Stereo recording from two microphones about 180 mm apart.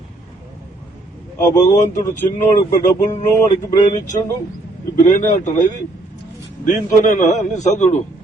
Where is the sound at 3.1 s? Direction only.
40° left (ahead or behind).